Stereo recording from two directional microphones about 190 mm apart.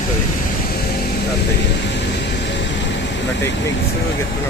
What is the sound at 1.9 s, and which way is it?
Air conditioning, 65° left (ahead or behind).